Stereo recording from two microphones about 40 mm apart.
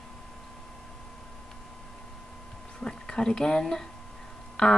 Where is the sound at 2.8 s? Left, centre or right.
Centre.